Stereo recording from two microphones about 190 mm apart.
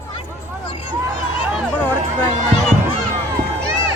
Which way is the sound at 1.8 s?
10° left (ahead or behind).